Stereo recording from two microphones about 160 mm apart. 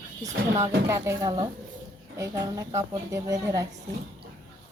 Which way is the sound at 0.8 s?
15° right (ahead or behind).